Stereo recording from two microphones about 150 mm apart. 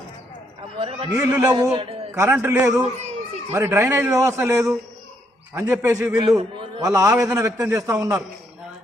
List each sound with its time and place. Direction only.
0.8 s a man's voice: 40° right (ahead or behind)
1.1 s a man's voice: 10° right (ahead or behind)
1.5 s a man's voice: 25° right (ahead or behind)
2.1 s a man's voice: 15° right (ahead or behind)